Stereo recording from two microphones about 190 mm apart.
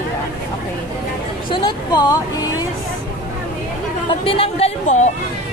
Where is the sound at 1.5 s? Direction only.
20° left (ahead or behind).